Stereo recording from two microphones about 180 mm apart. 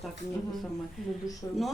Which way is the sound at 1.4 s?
15° left (ahead or behind).